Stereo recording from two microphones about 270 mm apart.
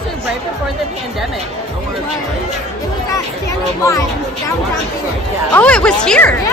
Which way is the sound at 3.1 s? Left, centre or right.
Centre.